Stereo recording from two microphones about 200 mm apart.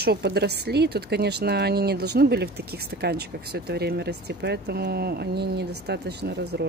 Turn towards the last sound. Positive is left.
turn(degrees=-55)  # may be behind; listen again after turning